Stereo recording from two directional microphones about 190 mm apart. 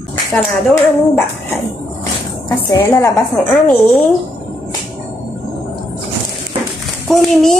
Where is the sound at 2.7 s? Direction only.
15° left (ahead or behind).